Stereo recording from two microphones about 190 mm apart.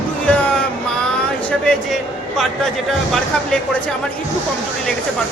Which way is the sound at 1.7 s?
Centre (ahead or behind).